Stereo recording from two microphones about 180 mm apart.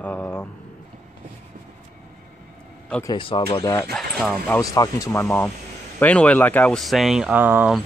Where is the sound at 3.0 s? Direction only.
30° left (ahead or behind).